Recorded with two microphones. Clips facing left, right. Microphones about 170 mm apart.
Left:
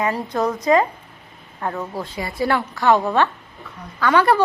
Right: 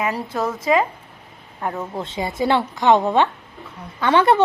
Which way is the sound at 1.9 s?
25° right (ahead or behind).